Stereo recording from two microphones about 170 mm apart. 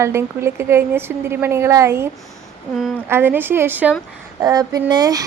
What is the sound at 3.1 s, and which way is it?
Speech, 10° right (ahead or behind).